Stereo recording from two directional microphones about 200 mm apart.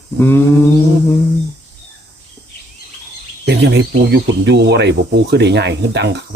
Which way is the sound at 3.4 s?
55° right (ahead or behind).